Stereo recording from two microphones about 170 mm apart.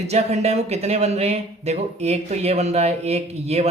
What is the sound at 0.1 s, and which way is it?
Speech, 40° right (ahead or behind).